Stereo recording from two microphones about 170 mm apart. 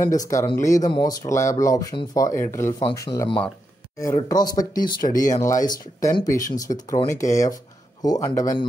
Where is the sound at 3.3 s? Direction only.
5° left (ahead or behind).